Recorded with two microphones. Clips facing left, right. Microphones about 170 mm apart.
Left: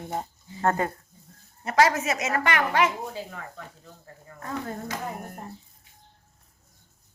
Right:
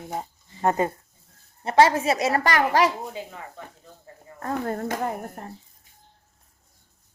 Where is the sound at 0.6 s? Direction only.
20° right (ahead or behind); by 2.9 s 35° right (ahead or behind).